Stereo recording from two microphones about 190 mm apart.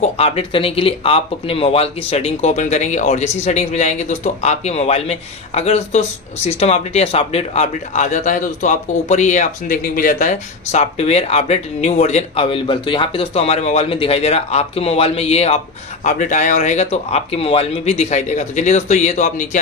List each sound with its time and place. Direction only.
0.0 s speech: 30° left (ahead or behind)